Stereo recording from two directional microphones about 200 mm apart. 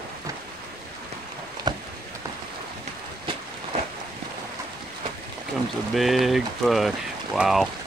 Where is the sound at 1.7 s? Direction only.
20° right (ahead or behind).